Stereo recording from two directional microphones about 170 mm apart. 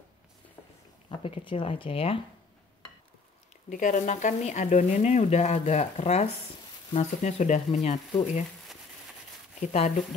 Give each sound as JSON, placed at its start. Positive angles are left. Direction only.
{"t": 1.0, "sound": "speech", "side_deg": 30}
{"t": 3.7, "sound": "speech", "side_deg": 50}
{"t": 9.6, "sound": "speech", "side_deg": 45}